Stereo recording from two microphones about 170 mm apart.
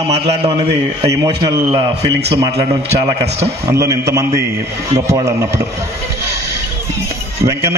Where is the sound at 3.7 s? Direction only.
15° right (ahead or behind).